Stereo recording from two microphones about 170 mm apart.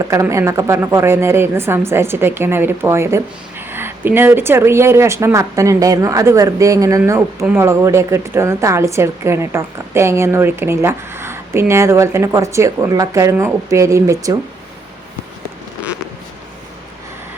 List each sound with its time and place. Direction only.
0.1 s a woman's voice: 15° right (ahead or behind)